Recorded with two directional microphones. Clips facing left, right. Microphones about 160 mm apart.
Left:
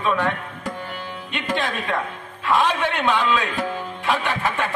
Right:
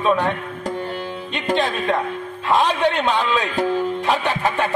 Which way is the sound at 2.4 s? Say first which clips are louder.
Right 2 dB; 20° right (ahead or behind).